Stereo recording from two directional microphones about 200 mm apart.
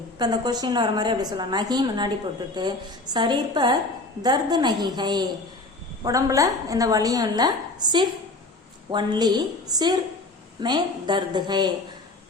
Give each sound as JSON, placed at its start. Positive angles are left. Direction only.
{"t": 0.2, "sound": "a woman's voice", "side_deg": -20}